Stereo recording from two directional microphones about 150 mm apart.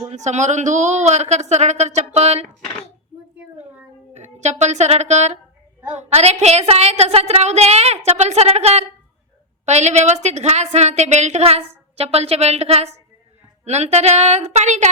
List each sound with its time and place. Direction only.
0.1 s a woman's voice: 50° right (ahead or behind)
4.1 s a woman's voice: 50° right (ahead or behind)